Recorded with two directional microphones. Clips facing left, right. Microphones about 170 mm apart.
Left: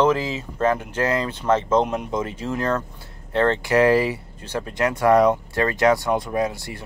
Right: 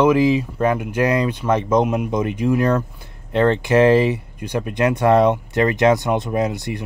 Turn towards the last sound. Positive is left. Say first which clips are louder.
# right 3 dB
turn(degrees=-20)  # may be behind; listen again after turning